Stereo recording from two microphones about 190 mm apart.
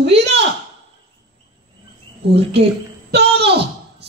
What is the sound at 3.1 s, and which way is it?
Speech, 60° right (ahead or behind).